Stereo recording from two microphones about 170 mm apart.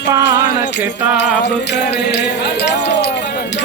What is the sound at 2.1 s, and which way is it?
Speech, 80° left.